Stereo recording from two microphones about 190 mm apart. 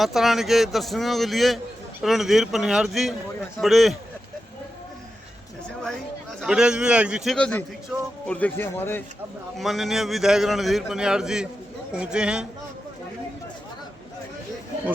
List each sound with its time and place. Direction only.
0.0 s a man's voice: centre (ahead or behind)
6.4 s a man's voice: 5° right (ahead or behind)
7.3 s a man's voice: 5° left (ahead or behind)
7.9 s speech: 5° right (ahead or behind)
8.3 s speech: 10° left (ahead or behind)
9.6 s a man's voice: centre (ahead or behind)